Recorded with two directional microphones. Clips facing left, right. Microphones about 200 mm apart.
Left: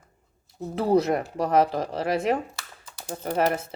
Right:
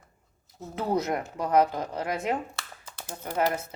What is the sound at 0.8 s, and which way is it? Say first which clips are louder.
Speech: left 6 dB; 30° left (ahead or behind).